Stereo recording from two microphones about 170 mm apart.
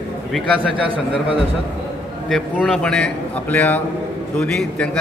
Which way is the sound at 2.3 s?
5° left (ahead or behind).